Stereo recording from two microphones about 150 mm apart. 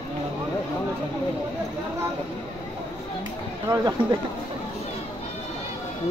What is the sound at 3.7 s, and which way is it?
Speech, 30° right (ahead or behind).